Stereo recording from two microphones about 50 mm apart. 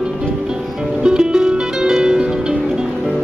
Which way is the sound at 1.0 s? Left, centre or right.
Centre.